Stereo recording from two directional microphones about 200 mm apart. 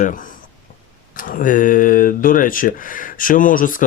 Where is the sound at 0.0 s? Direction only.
40° left (ahead or behind).